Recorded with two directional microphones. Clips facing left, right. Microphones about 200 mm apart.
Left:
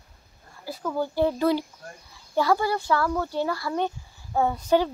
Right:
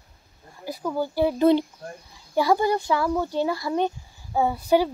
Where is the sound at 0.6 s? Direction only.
15° right (ahead or behind).